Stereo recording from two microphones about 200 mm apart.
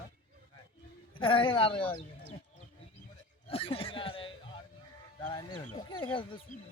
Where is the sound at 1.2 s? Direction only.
25° left (ahead or behind).